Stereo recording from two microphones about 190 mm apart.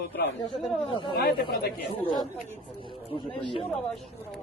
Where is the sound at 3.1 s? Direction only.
30° left (ahead or behind).